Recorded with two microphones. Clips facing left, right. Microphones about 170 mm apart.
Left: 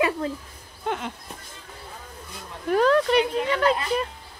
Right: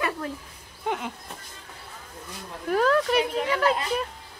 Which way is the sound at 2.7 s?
Centre (ahead or behind).